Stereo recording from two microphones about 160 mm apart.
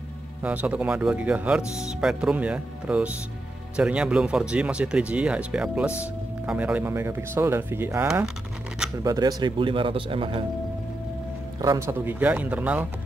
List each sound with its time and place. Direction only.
0.4 s speech: 10° right (ahead or behind); by 10.4 s 30° right (ahead or behind)
11.6 s speech: 20° right (ahead or behind)